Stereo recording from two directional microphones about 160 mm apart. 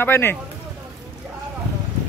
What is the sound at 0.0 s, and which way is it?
Speech, 15° left (ahead or behind).